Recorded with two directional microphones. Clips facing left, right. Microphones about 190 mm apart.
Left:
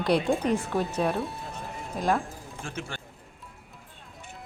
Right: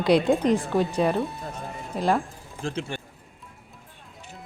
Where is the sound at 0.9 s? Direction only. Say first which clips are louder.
Right 4 dB; centre (ahead or behind).